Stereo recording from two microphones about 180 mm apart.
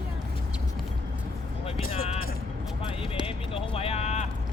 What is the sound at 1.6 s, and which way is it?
Music, 35° left (ahead or behind).